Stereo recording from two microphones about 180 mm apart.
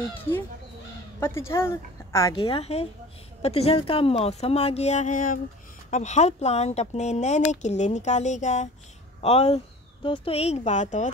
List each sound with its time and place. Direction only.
1.2 s a woman's voice: 15° left (ahead or behind)
2.3 s speech: 30° left (ahead or behind)